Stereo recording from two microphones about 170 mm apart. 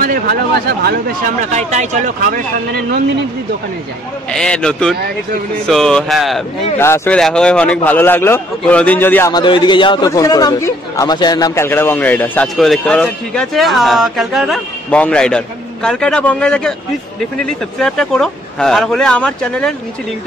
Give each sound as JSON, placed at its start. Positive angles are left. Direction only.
{"t": 0.0, "sound": "speech", "side_deg": -60}
{"t": 1.5, "sound": "speech", "side_deg": -45}
{"t": 4.3, "sound": "speech", "side_deg": 5}
{"t": 6.8, "sound": "a man's voice", "side_deg": 15}
{"t": 7.2, "sound": "a man's voice", "side_deg": 5}
{"t": 9.3, "sound": "a man's voice", "side_deg": 30}
{"t": 17.7, "sound": "speech", "side_deg": 5}